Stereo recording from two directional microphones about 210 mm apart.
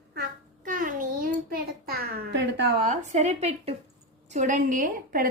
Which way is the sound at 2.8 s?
35° right (ahead or behind).